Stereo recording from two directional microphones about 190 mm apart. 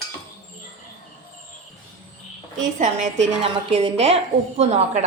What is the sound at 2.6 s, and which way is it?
A woman's voice, 40° right (ahead or behind).